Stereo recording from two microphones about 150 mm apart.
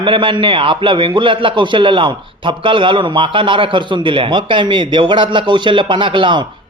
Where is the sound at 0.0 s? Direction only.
35° right (ahead or behind).